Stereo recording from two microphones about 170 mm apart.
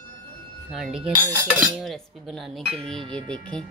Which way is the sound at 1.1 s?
25° right (ahead or behind).